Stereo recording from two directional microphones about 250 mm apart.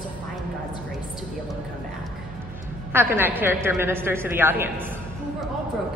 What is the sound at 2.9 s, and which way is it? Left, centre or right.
A woman's voice, centre.